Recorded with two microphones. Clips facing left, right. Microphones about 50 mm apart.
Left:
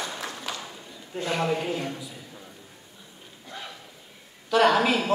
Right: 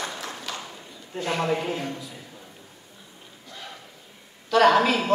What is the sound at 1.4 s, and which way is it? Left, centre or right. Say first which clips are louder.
Speech: right 1 dB; centre.